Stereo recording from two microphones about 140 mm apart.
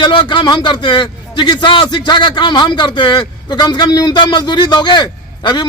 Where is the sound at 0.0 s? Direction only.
35° left (ahead or behind).